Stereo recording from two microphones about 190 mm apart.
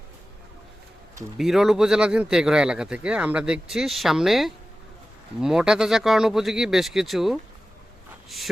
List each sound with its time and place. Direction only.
1.4 s speech: centre (ahead or behind)